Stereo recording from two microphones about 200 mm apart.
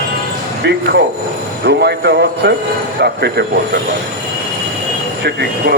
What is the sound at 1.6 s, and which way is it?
Speech, 55° right (ahead or behind).